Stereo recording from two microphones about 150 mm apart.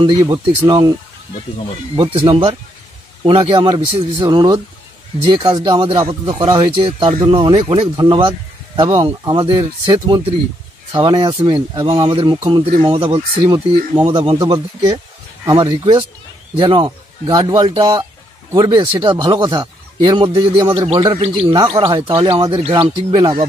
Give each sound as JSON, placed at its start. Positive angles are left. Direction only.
{"t": 0.0, "sound": "speech", "side_deg": -25}
{"t": 2.0, "sound": "speech", "side_deg": -35}